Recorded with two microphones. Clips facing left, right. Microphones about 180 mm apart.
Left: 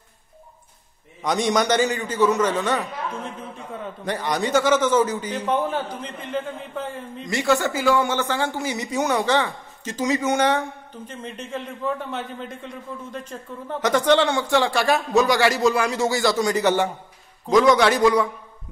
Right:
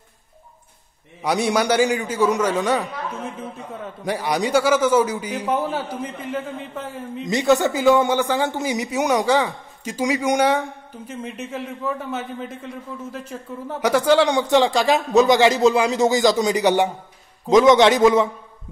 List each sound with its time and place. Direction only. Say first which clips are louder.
1.2 s a man's voice: right 1 dB; 10° right (ahead or behind)
7.2 s a man's voice: right 4 dB; 20° right (ahead or behind)